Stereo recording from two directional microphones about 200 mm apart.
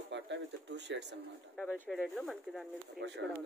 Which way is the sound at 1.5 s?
5° right (ahead or behind).